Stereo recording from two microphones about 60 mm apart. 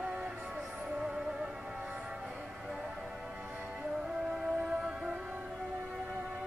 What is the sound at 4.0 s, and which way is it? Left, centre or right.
Music, centre.